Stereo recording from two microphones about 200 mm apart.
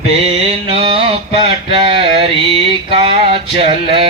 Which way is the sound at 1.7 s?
25° right (ahead or behind).